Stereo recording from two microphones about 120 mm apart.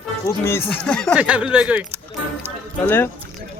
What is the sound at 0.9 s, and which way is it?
Speech, 5° left (ahead or behind).